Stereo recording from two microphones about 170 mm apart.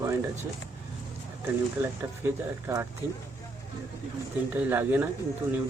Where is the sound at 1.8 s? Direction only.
15° right (ahead or behind).